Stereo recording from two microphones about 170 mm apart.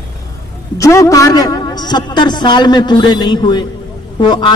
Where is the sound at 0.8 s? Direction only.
15° left (ahead or behind).